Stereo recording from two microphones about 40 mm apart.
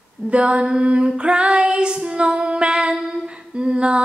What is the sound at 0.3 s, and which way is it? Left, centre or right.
Female singing, right.